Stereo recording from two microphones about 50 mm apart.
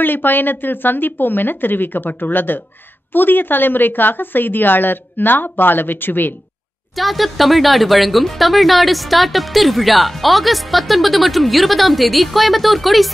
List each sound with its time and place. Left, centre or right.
0.0 s a woman's voice: left
7.0 s a woman's voice: centre